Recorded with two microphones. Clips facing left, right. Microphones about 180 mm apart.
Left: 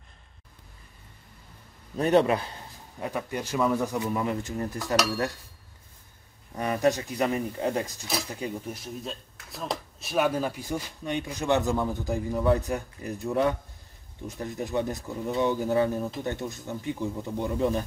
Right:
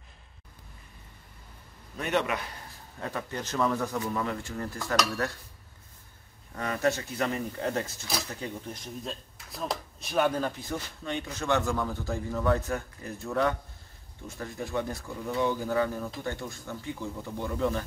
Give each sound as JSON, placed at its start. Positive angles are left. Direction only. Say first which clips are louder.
{"t": 2.0, "sound": "a man's voice", "louder": "left 7 dB", "side_deg": 35}
{"t": 3.0, "sound": "speech", "louder": "left 3 dB", "side_deg": 15}
{"t": 6.5, "sound": "speech", "louder": "left 4 dB", "side_deg": 20}